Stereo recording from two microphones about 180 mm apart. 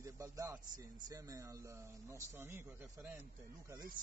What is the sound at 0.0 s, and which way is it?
A man's voice, 15° right (ahead or behind).